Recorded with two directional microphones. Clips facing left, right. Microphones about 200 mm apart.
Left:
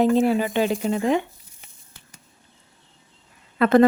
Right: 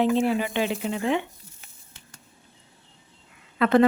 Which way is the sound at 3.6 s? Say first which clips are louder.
Left 3 dB; 40° left (ahead or behind).